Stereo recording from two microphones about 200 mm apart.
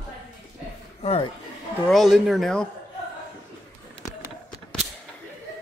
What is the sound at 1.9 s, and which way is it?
Speech, centre (ahead or behind).